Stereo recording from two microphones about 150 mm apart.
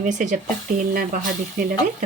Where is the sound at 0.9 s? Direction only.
70° right (ahead or behind).